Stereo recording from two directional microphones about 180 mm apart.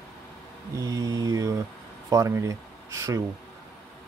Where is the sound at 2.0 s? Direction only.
15° right (ahead or behind).